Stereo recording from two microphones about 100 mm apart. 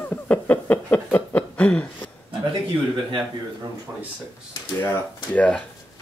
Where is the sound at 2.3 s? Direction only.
55° right (ahead or behind).